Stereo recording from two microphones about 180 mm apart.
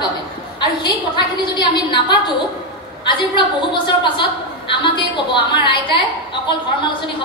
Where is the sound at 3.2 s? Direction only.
25° left (ahead or behind).